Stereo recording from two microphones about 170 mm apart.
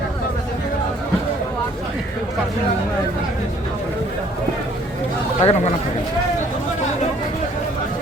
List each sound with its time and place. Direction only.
5.4 s speech: 35° left (ahead or behind)